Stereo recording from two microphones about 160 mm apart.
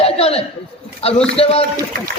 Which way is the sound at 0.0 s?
40° left (ahead or behind).